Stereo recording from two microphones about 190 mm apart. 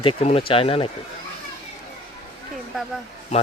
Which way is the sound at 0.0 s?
30° left (ahead or behind).